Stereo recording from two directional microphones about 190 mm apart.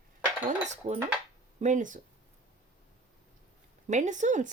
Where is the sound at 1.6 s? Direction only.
40° right (ahead or behind).